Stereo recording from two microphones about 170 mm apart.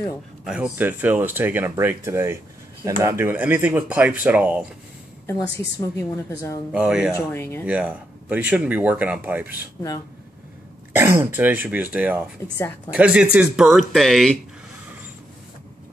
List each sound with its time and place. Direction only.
0.5 s speech: 10° right (ahead or behind)
5.2 s a woman's voice: 20° left (ahead or behind)
6.7 s speech: 5° right (ahead or behind)
7.2 s a woman's voice: 15° left (ahead or behind)
7.6 s speech: 5° right (ahead or behind)
10.9 s speech: 15° right (ahead or behind)
12.5 s a woman's voice: 10° left (ahead or behind)
12.9 s speech: 5° right (ahead or behind)